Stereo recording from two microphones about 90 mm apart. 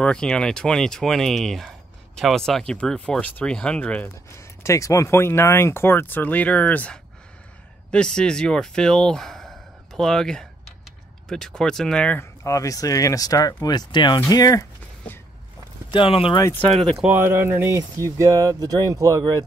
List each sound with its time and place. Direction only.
0.0 s speech: 10° left (ahead or behind)
4.6 s speech: 35° left (ahead or behind); by 12.2 s 10° left (ahead or behind)
12.2 s speech: 35° left (ahead or behind); by 14.2 s 55° left (ahead or behind)
14.3 s speech: 40° left (ahead or behind)
15.9 s speech: 75° left (ahead or behind)
17.1 s speech: 25° right (ahead or behind)
17.7 s speech: 35° right (ahead or behind)